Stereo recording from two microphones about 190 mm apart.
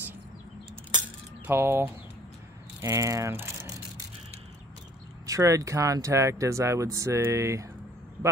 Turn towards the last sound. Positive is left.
turn(degrees=-15)  # may be behind; listen again after turning